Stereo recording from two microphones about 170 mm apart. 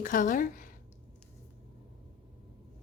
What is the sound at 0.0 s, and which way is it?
Speech, 50° left (ahead or behind).